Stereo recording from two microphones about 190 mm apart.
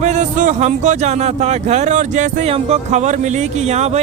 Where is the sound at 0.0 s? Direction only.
40° right (ahead or behind).